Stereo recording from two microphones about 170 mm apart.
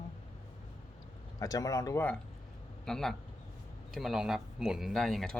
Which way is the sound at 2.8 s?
5° left (ahead or behind).